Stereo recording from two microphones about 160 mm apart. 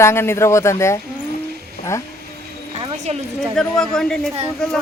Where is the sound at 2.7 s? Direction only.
35° right (ahead or behind).